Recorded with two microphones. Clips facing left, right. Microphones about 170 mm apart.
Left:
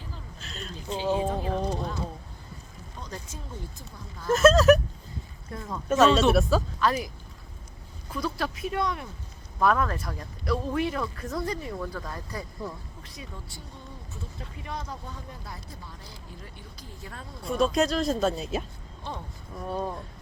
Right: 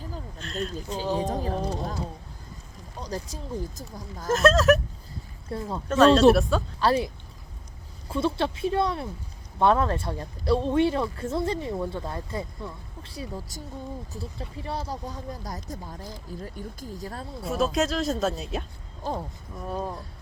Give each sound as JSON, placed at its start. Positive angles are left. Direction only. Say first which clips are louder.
{"t": 0.3, "sound": "speech", "louder": "right 10 dB", "side_deg": 0}
{"t": 1.2, "sound": "speech", "louder": "even", "side_deg": -40}
{"t": 3.0, "sound": "speech", "louder": "right 6 dB", "side_deg": -35}
{"t": 4.3, "sound": "speech", "louder": "left 2 dB", "side_deg": 0}
{"t": 5.5, "sound": "speech", "louder": "right 5 dB", "side_deg": -30}
{"t": 5.9, "sound": "speech", "louder": "right 4 dB", "side_deg": 5}
{"t": 6.7, "sound": "speech", "louder": "right 3 dB", "side_deg": -30}
{"t": 8.1, "sound": "speech", "louder": "right 5 dB", "side_deg": -25}
{"t": 17.4, "sound": "speech", "louder": "left 1 dB", "side_deg": 0}